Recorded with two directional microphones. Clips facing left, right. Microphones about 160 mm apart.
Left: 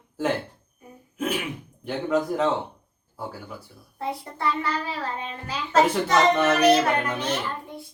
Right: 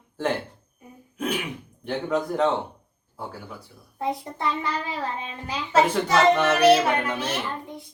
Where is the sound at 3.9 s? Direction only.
20° right (ahead or behind).